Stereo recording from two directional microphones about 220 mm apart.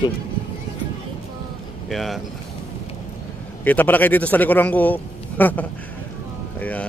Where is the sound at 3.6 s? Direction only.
10° left (ahead or behind).